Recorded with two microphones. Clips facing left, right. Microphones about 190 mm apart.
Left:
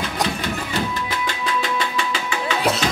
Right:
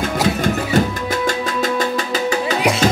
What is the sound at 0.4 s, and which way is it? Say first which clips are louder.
Music: right 8 dB; 45° right (ahead or behind).